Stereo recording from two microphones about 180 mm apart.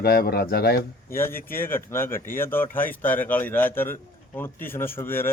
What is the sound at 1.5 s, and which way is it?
A man's voice, 10° left (ahead or behind).